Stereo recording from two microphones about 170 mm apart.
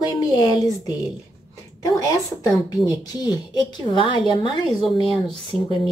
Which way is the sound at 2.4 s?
25° left (ahead or behind).